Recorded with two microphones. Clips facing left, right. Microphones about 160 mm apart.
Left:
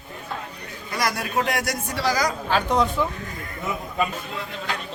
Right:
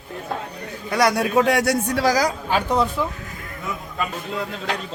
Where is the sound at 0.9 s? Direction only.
75° right (ahead or behind).